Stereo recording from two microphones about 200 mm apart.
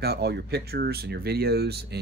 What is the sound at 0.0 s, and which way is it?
Speech, 55° right (ahead or behind).